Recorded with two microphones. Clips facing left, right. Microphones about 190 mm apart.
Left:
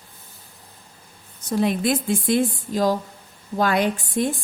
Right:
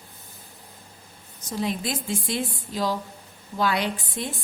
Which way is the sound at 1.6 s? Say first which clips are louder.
Left 7 dB; 60° left (ahead or behind).